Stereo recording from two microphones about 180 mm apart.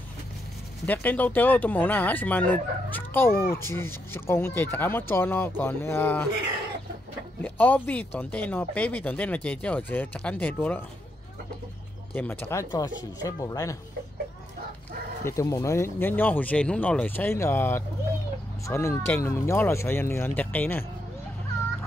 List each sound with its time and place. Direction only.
0.8 s speech: 10° left (ahead or behind)
7.4 s speech: 10° left (ahead or behind)
12.1 s speech: 10° left (ahead or behind)
15.2 s speech: 15° left (ahead or behind)